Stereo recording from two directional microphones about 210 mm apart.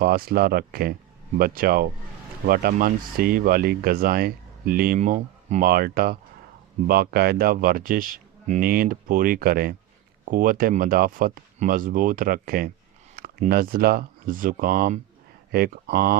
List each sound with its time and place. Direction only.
0.0 s speech: 45° right (ahead or behind)